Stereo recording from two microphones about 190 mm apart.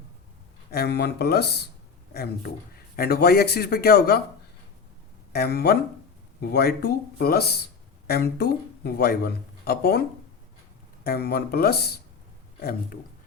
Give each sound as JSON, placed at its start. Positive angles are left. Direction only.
{"t": 0.7, "sound": "speech", "side_deg": 60}
{"t": 5.3, "sound": "speech", "side_deg": 55}